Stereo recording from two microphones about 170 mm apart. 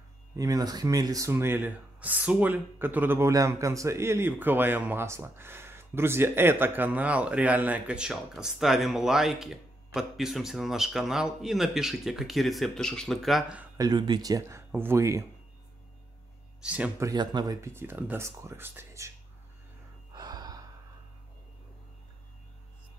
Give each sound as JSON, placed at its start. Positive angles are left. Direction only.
{"t": 0.4, "sound": "speech", "side_deg": -20}
{"t": 13.7, "sound": "speech", "side_deg": -25}
{"t": 16.6, "sound": "speech", "side_deg": -5}
{"t": 17.0, "sound": "speech", "side_deg": -25}
{"t": 20.1, "sound": "gasp", "side_deg": -25}